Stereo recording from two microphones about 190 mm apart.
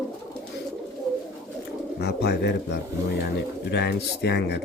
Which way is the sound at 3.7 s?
60° left (ahead or behind).